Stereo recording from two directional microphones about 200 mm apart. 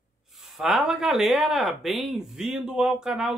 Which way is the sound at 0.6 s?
Centre (ahead or behind).